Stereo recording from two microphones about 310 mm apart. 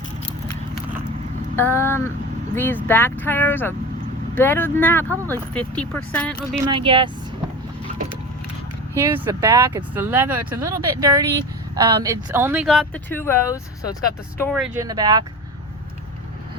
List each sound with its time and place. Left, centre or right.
1.5 s speech: centre
6.7 s speech: centre
9.0 s speech: centre
14.5 s speech: centre